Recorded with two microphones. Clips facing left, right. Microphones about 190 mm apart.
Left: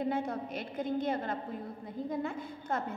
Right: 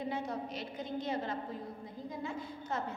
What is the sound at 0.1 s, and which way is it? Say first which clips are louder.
A woman's voice: left 4 dB; 55° left (ahead or behind).